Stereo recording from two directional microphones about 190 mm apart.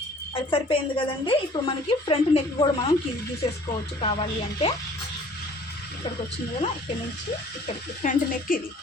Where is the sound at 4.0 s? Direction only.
30° left (ahead or behind).